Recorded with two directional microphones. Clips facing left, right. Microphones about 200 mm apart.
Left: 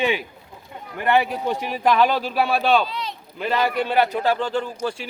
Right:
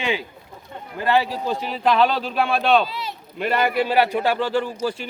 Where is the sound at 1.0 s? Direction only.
15° left (ahead or behind); by 5.1 s 5° right (ahead or behind).